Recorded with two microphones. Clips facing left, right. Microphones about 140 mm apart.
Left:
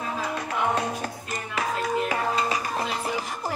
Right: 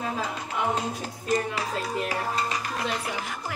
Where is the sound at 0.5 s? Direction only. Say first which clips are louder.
Left 2 dB; 65° left (ahead or behind).